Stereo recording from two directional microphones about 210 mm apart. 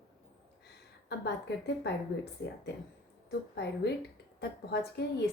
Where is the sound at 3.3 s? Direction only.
55° left (ahead or behind).